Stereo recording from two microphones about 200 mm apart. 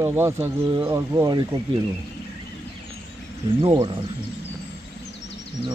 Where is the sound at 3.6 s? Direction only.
25° right (ahead or behind).